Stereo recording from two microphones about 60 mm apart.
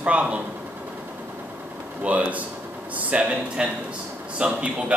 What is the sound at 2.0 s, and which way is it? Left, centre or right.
A man's voice, right.